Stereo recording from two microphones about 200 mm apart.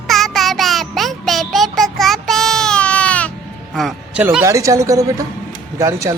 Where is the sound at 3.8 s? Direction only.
Centre (ahead or behind).